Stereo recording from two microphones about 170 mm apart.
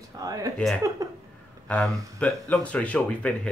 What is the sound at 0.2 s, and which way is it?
Speech, 20° right (ahead or behind).